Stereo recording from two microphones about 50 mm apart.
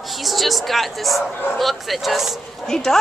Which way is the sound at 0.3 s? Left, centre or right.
Centre.